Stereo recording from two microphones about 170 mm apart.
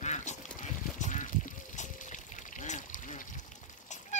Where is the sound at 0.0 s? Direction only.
45° left (ahead or behind).